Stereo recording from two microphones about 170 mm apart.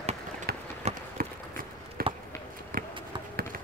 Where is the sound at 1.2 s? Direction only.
60° right (ahead or behind).